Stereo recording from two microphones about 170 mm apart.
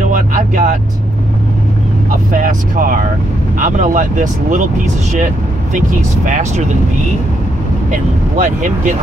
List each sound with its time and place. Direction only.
0.1 s music: 50° right (ahead or behind)
2.0 s speech: 50° right (ahead or behind)
8.4 s speech: 50° right (ahead or behind)